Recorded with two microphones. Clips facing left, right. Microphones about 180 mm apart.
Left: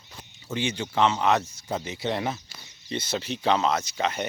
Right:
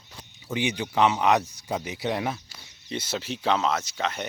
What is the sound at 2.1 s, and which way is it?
Speech, 5° right (ahead or behind).